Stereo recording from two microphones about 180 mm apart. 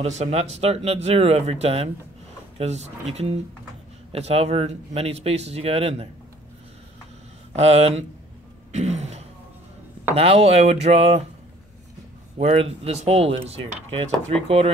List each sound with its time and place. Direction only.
0.0 s speech: 40° right (ahead or behind)
7.5 s speech: 35° right (ahead or behind)
8.7 s throat clearing: 40° right (ahead or behind)
10.1 s speech: 35° right (ahead or behind)
12.4 s speech: 35° right (ahead or behind)